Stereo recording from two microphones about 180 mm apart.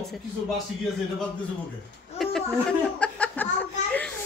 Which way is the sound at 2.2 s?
5° left (ahead or behind).